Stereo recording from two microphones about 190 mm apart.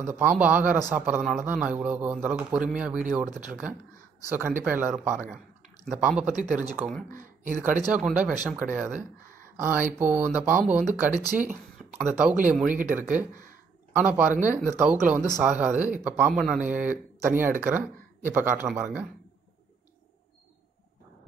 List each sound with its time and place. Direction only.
0.0 s speech: 10° right (ahead or behind)
6.3 s speech: 40° right (ahead or behind)
7.9 s speech: 5° right (ahead or behind)